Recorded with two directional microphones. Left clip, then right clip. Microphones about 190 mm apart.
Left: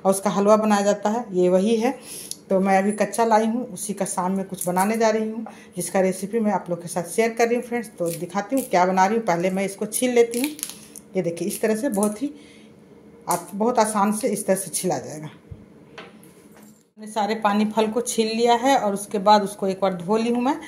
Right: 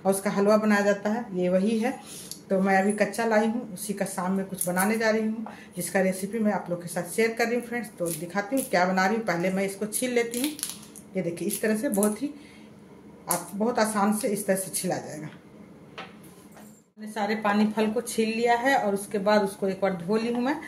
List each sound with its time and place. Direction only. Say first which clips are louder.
0.0 s speech: left 4 dB; 30° left (ahead or behind)
17.0 s speech: left 5 dB; 35° left (ahead or behind)